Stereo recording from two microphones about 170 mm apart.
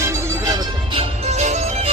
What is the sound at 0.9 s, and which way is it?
Music, 40° right (ahead or behind).